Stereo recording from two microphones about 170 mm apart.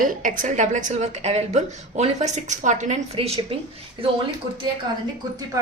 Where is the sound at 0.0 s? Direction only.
50° right (ahead or behind); by 4.1 s 30° right (ahead or behind).